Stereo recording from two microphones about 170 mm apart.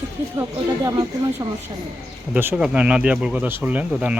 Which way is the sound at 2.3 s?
10° right (ahead or behind).